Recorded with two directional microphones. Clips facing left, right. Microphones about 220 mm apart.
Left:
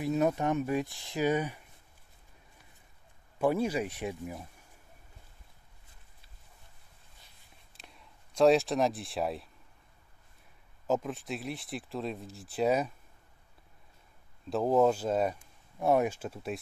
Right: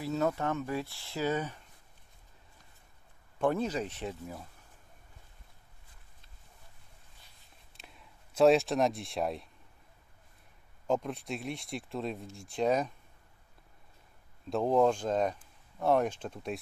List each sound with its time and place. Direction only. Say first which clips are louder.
0.0 s speech: left 3 dB; 15° left (ahead or behind)
3.3 s speech: left 2 dB; 10° left (ahead or behind)
7.7 s a sound: even; centre (ahead or behind)
10.9 s speech: left 1 dB; centre (ahead or behind)
14.5 s speech: left 1 dB; 5° left (ahead or behind)